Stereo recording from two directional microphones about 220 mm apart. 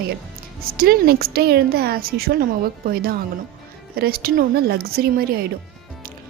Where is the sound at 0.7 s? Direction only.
45° right (ahead or behind).